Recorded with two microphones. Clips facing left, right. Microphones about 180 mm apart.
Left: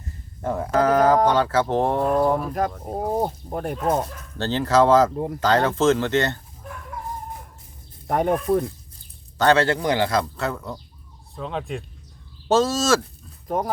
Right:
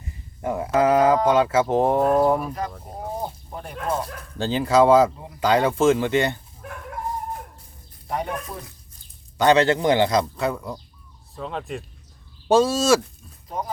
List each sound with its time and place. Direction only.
0.0 s speech: 5° right (ahead or behind)
3.1 s speech: 50° left (ahead or behind)
4.4 s speech: 10° right (ahead or behind)
5.1 s speech: 50° left (ahead or behind)
5.4 s speech: 10° right (ahead or behind)
8.0 s speech: 50° left (ahead or behind)
9.4 s speech: 15° right (ahead or behind)
11.3 s speech: centre (ahead or behind)
12.5 s speech: 15° right (ahead or behind)
13.5 s speech: 50° left (ahead or behind)